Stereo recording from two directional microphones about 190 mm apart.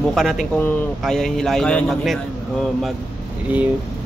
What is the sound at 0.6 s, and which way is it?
Speech, 10° left (ahead or behind).